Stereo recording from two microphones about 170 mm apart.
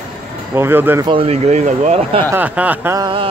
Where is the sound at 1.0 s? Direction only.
35° right (ahead or behind).